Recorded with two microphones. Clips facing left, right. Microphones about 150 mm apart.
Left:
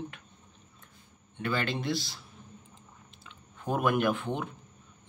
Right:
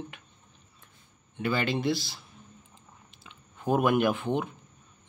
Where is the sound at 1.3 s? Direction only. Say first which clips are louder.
Right 3 dB; 5° right (ahead or behind).